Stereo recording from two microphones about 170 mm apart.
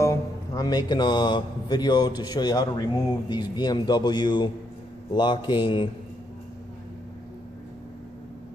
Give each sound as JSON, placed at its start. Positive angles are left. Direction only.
{"t": 0.0, "sound": "a man's voice", "side_deg": 20}